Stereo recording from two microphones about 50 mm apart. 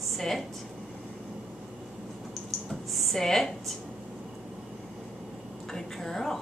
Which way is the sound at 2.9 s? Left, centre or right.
Centre.